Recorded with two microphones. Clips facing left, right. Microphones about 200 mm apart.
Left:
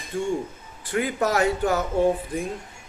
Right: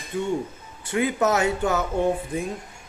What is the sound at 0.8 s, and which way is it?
Speech, 20° right (ahead or behind).